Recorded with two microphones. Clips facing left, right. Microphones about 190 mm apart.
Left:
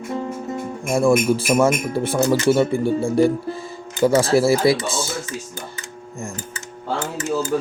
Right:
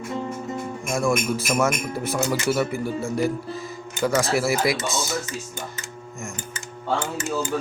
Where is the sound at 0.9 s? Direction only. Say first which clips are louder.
Left 7 dB; 30° left (ahead or behind).